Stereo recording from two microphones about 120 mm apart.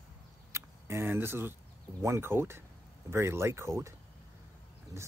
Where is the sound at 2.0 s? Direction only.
20° right (ahead or behind).